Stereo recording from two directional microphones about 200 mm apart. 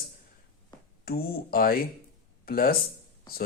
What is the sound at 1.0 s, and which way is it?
Speech, 50° left (ahead or behind).